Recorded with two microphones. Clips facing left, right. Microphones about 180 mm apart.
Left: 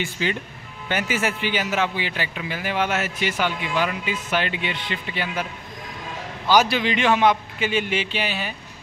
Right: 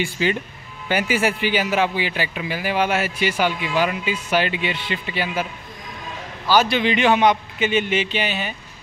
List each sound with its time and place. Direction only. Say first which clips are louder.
0.0 s a man's voice: right 4 dB; 10° right (ahead or behind)
6.6 s a man's voice: right 3 dB; 5° left (ahead or behind)